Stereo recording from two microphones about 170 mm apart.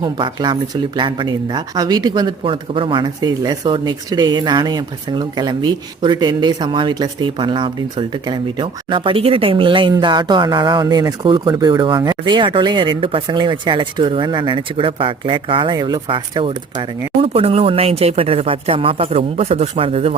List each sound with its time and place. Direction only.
0.0 s speech: 25° right (ahead or behind)